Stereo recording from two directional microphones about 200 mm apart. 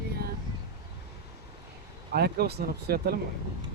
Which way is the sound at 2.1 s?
50° right (ahead or behind).